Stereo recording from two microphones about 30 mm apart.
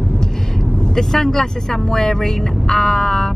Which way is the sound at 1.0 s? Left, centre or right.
Centre.